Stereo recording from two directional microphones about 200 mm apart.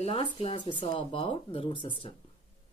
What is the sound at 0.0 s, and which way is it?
Speech, 30° left (ahead or behind).